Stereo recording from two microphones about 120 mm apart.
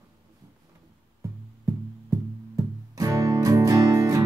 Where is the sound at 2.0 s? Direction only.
30° right (ahead or behind).